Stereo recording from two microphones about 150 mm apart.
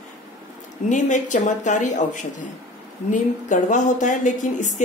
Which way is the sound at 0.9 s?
55° left (ahead or behind).